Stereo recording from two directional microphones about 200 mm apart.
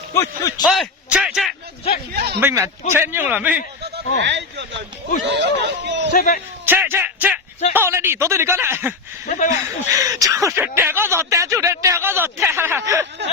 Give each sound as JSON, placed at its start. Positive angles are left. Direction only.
{"t": 0.1, "sound": "a man's voice", "side_deg": 15}
{"t": 0.6, "sound": "speech", "side_deg": 0}
{"t": 2.1, "sound": "speech", "side_deg": -50}
{"t": 2.4, "sound": "speech", "side_deg": -10}
{"t": 4.2, "sound": "speech", "side_deg": -60}
{"t": 6.1, "sound": "a man's voice", "side_deg": 45}
{"t": 6.7, "sound": "a sound", "side_deg": -10}
{"t": 7.7, "sound": "speech", "side_deg": -10}
{"t": 9.2, "sound": "speech", "side_deg": 40}
{"t": 9.6, "sound": "speech", "side_deg": -15}